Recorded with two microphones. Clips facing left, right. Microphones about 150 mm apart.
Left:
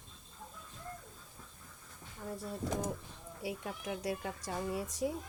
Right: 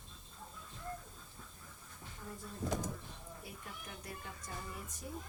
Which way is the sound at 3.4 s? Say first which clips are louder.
Left 14 dB; 90° left.